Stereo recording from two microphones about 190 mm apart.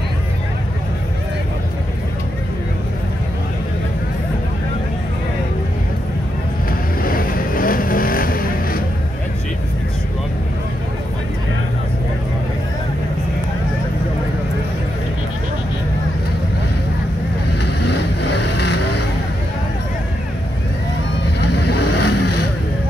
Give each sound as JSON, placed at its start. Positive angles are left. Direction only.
{"t": 6.7, "sound": "vehicle", "side_deg": 50}
{"t": 17.8, "sound": "vehicle", "side_deg": 60}
{"t": 21.4, "sound": "vehicle", "side_deg": 60}